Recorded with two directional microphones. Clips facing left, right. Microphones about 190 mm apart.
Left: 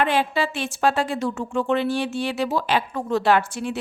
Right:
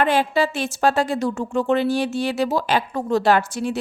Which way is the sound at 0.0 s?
40° right (ahead or behind).